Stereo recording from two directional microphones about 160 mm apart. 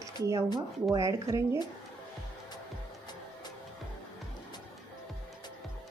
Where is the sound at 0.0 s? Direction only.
20° right (ahead or behind).